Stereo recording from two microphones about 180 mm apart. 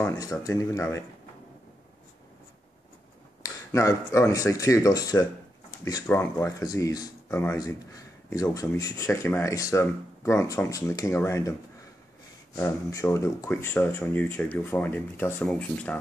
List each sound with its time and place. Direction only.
0.0 s speech: 20° left (ahead or behind)
3.4 s speech: 15° left (ahead or behind)
12.5 s speech: 15° left (ahead or behind)